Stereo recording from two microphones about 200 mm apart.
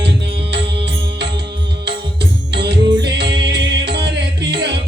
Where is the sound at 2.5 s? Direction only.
55° right (ahead or behind).